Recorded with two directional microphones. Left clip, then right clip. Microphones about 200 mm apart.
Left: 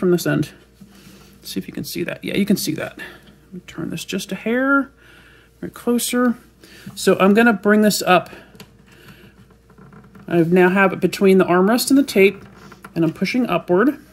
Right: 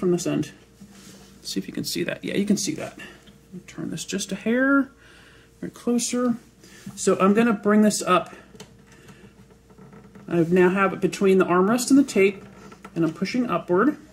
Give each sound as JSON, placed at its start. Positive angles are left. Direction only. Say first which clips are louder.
{"t": 0.0, "sound": "speech", "louder": "left 5 dB", "side_deg": 60}
{"t": 1.4, "sound": "speech", "louder": "left 1 dB", "side_deg": 25}
{"t": 2.2, "sound": "speech", "louder": "left 4 dB", "side_deg": 30}
{"t": 2.5, "sound": "speech", "louder": "left 5 dB", "side_deg": 50}
{"t": 5.6, "sound": "speech", "louder": "left 4 dB", "side_deg": 35}
{"t": 7.1, "sound": "speech", "louder": "left 6 dB", "side_deg": 60}
{"t": 10.2, "sound": "speech", "louder": "left 4 dB", "side_deg": 60}